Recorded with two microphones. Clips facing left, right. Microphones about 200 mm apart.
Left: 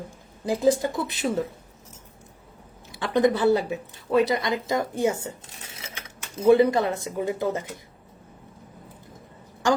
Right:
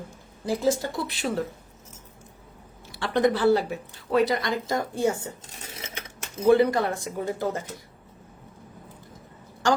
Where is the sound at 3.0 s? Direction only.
20° left (ahead or behind).